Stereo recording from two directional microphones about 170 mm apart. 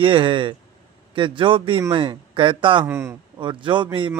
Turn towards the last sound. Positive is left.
turn(degrees=-30)  # may be behind; listen again after turning